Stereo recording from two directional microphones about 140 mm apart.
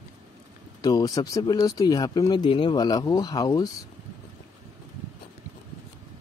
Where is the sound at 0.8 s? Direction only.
25° left (ahead or behind).